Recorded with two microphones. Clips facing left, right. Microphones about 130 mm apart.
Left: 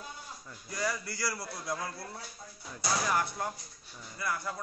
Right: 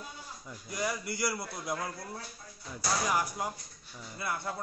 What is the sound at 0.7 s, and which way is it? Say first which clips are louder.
Speech: right 1 dB; 20° right (ahead or behind).